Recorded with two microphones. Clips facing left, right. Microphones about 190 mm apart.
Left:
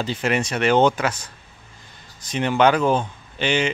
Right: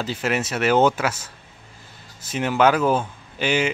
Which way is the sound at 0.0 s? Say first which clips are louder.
Left 2 dB; 5° right (ahead or behind).